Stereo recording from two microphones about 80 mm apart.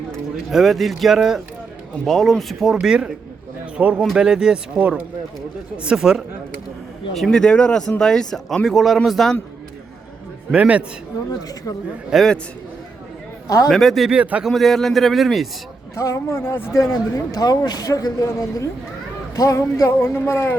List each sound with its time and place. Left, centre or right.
0.5 s a man's voice: centre
7.1 s a man's voice: centre
10.5 s speech: centre
12.1 s a man's voice: centre
13.7 s a man's voice: centre
14.1 s speech: centre
14.4 s a man's voice: centre
16.0 s speech: left
16.7 s speech: left
20.0 s speech: left